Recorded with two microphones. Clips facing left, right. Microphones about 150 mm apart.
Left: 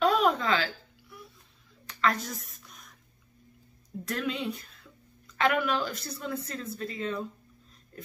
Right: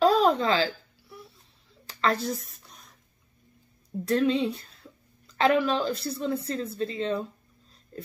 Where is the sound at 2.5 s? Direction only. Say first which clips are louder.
Even; 30° right (ahead or behind).